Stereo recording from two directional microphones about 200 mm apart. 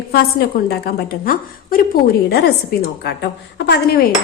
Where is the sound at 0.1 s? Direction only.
50° left (ahead or behind).